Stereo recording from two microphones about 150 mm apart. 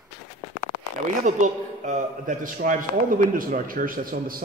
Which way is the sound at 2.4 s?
65° right (ahead or behind).